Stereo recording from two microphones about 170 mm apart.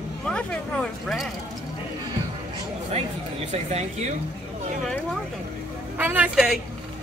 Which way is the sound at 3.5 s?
40° right (ahead or behind).